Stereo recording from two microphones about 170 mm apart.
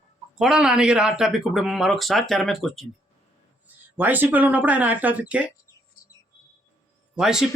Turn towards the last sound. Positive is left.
turn(degrees=-5)  # may be behind; listen again after turning